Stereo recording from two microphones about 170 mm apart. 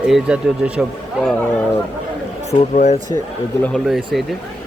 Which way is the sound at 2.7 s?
40° left (ahead or behind).